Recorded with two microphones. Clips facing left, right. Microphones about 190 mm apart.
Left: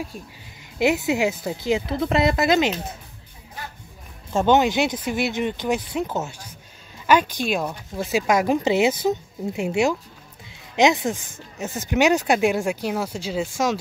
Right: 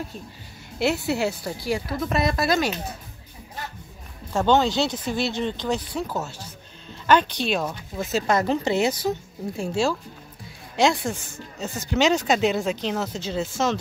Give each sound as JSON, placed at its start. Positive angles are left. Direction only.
{"t": 0.7, "sound": "speech", "side_deg": 15}
{"t": 4.3, "sound": "speech", "side_deg": 20}
{"t": 10.8, "sound": "speech", "side_deg": 20}